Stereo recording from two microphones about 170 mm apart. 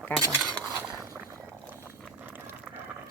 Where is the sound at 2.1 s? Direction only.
10° right (ahead or behind).